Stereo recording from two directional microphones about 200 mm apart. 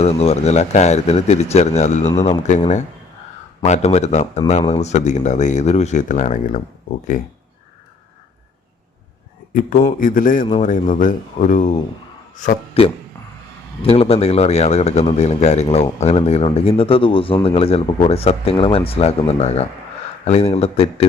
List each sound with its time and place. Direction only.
0.0 s speech: 30° left (ahead or behind)
9.5 s speech: 40° left (ahead or behind)
13.8 s speech: 30° left (ahead or behind)